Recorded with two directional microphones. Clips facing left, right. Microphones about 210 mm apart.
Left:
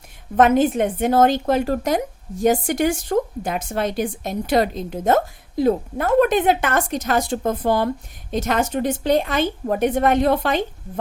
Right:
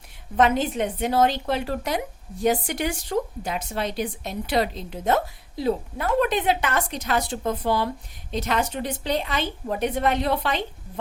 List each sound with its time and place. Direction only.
0.3 s a woman's voice: 50° left (ahead or behind)